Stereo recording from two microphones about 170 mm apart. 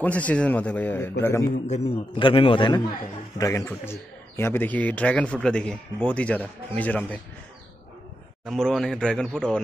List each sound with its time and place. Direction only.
0.0 s a man's voice: 10° left (ahead or behind)
1.5 s a man's voice: 40° left (ahead or behind)
2.1 s a man's voice: 30° left (ahead or behind)
3.3 s a man's voice: 20° left (ahead or behind)
8.5 s a man's voice: centre (ahead or behind)